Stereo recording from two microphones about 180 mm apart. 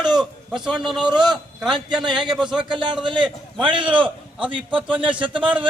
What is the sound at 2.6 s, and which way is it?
Speech, 25° right (ahead or behind).